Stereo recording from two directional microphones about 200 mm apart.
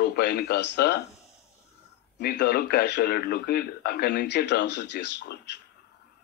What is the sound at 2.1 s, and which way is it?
Speech, 55° left (ahead or behind).